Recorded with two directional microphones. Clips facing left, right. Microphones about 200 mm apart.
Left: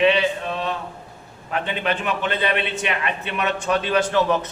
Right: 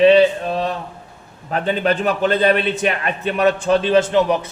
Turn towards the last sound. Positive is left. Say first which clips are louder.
# right 4 dB
turn(degrees=-15)  # may be behind; listen again after turning